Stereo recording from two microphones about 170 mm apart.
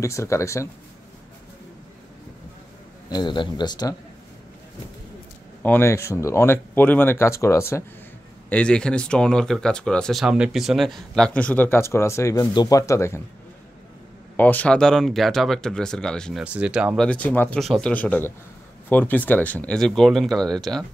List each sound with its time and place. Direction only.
0.0 s speech: 15° left (ahead or behind)
3.1 s speech: 25° left (ahead or behind)
5.6 s speech: 10° left (ahead or behind)
14.3 s speech: 10° left (ahead or behind)